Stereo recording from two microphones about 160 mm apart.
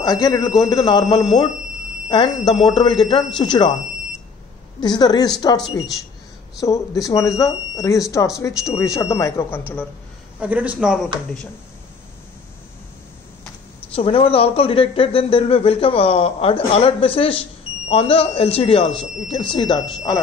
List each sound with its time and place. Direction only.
0.0 s a woman's voice: 25° left (ahead or behind)
4.7 s a woman's voice: 25° left (ahead or behind)
10.4 s a man's voice: 10° right (ahead or behind)
13.9 s speech: 35° left (ahead or behind)